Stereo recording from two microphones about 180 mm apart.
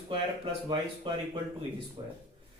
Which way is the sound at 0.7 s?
25° right (ahead or behind).